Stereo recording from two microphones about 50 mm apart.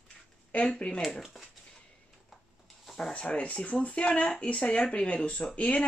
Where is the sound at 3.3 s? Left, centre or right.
Left.